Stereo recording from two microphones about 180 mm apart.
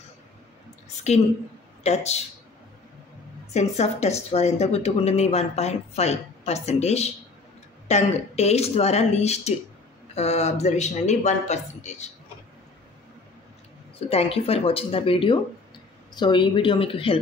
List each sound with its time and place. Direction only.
1.1 s speech: 40° left (ahead or behind)
3.5 s speech: 40° left (ahead or behind)
13.9 s speech: 35° left (ahead or behind)